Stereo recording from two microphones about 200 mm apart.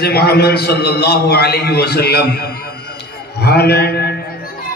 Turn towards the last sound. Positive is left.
turn(degrees=55)  # may be behind; listen again after turning